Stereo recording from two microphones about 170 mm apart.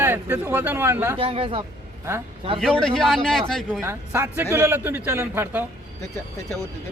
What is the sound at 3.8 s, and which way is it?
Speech, 15° right (ahead or behind).